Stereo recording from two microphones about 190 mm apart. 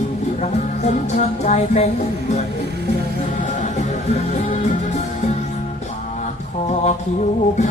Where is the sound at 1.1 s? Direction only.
35° left (ahead or behind).